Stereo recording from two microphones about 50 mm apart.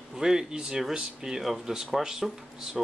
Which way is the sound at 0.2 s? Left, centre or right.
Centre.